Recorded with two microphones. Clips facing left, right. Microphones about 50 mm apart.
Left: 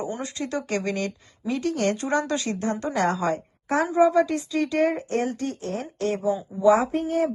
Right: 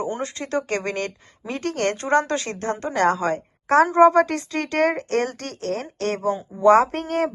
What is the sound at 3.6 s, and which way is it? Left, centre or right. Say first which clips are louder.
Speech: right 6 dB; right.